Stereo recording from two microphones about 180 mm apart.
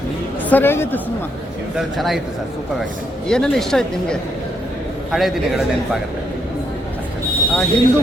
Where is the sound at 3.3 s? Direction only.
5° left (ahead or behind).